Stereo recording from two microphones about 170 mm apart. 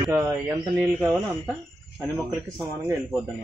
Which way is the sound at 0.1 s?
20° right (ahead or behind).